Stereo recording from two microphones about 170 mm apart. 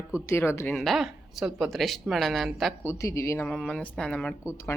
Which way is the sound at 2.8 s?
15° left (ahead or behind).